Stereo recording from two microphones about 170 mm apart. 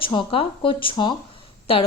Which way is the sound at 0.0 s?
30° left (ahead or behind).